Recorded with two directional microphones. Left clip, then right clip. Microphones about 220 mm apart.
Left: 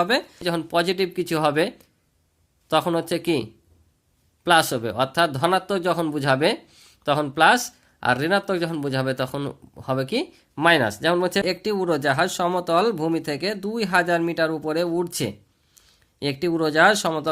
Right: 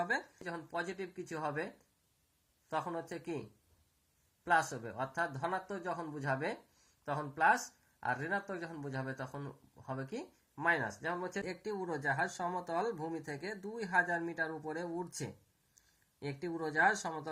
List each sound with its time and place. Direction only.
0.4 s speech: 55° left (ahead or behind)
4.4 s speech: 50° left (ahead or behind)